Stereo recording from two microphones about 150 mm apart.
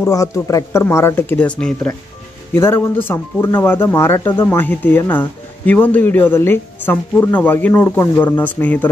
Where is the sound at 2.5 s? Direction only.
15° left (ahead or behind).